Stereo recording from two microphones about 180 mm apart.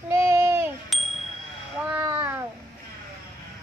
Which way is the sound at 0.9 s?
Centre (ahead or behind).